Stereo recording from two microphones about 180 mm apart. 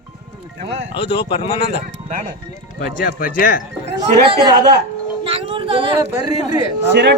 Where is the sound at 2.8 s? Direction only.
50° left (ahead or behind).